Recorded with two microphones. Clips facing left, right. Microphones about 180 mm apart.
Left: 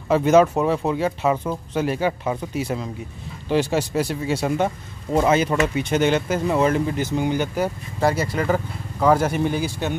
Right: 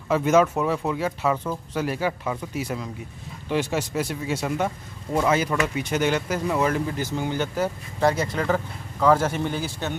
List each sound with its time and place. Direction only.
0.1 s speech: 30° left (ahead or behind); by 9.9 s 15° left (ahead or behind)